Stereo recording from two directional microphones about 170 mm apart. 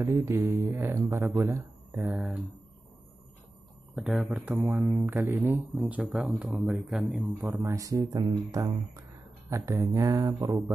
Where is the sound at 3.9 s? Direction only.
5° right (ahead or behind).